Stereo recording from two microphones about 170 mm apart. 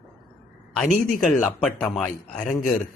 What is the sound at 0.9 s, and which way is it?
Speech, 50° left (ahead or behind).